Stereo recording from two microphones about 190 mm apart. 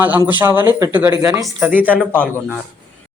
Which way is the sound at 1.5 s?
5° right (ahead or behind).